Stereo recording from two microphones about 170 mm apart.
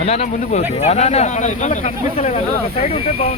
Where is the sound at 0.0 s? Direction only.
40° left (ahead or behind).